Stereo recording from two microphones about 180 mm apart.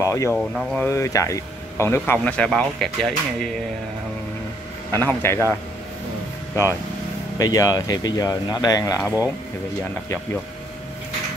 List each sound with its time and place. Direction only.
0.0 s speech: 15° left (ahead or behind)
4.9 s speech: 15° left (ahead or behind)
7.3 s speech: 20° left (ahead or behind)